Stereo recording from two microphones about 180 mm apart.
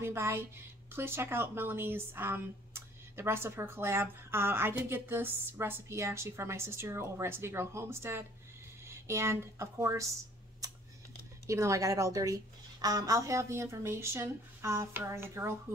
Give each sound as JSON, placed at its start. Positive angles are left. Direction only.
{"t": 0.0, "sound": "a woman's voice", "side_deg": -15}
{"t": 11.4, "sound": "speech", "side_deg": -15}